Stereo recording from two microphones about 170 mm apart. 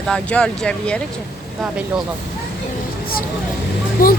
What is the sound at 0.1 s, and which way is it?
Speech, 5° left (ahead or behind).